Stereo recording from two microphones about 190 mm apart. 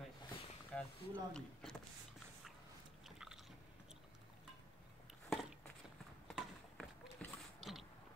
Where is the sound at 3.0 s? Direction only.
5° right (ahead or behind).